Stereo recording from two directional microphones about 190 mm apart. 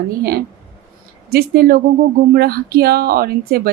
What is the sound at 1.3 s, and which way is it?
Speech, 55° right (ahead or behind).